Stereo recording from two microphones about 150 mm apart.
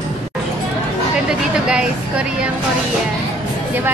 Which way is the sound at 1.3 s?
5° right (ahead or behind).